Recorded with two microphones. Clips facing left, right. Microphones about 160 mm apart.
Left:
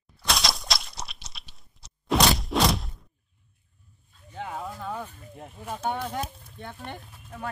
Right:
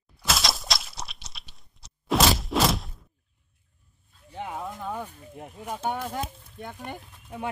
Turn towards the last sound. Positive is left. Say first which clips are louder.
# right 3 dB
turn(degrees=-10)  # may be behind; listen again after turning